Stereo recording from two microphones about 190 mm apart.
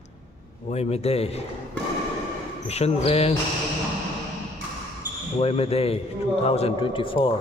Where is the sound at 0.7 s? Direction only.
35° left (ahead or behind).